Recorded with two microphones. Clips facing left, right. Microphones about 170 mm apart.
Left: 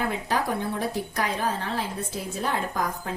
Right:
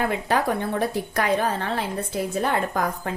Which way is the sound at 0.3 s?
60° right (ahead or behind).